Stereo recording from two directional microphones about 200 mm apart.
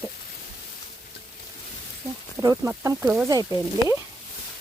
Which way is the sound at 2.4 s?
15° right (ahead or behind).